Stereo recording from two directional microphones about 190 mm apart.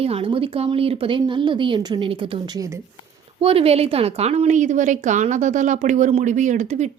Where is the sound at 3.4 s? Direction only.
30° right (ahead or behind).